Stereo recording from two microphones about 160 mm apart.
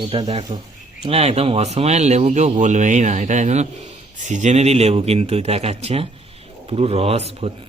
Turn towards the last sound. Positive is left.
turn(degrees=-40)  # may be behind; listen again after turning